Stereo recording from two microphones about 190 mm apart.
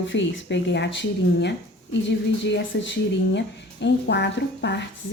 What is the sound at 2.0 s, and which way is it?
A woman's voice, 70° left (ahead or behind).